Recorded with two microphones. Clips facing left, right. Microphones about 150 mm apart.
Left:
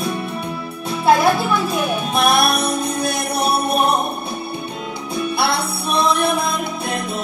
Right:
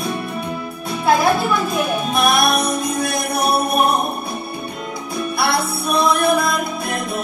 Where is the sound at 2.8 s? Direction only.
30° left (ahead or behind).